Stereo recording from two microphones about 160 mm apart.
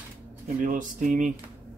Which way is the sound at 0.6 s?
55° right (ahead or behind).